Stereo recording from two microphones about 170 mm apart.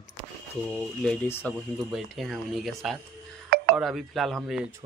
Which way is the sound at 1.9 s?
Centre (ahead or behind).